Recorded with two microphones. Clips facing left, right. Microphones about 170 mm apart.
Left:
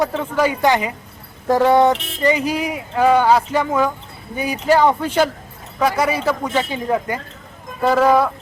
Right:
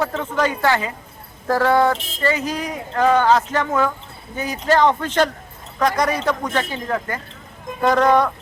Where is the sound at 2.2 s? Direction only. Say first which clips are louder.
Left 4 dB; 15° left (ahead or behind).